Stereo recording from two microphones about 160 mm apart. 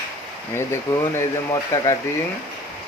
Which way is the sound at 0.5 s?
15° left (ahead or behind).